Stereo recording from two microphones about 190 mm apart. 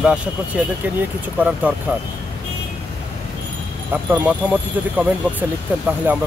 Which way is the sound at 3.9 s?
10° right (ahead or behind).